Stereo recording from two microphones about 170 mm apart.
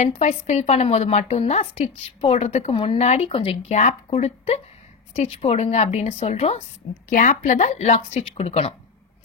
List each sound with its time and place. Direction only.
0.0 s a woman's voice: 45° left (ahead or behind)
7.1 s speech: 50° left (ahead or behind)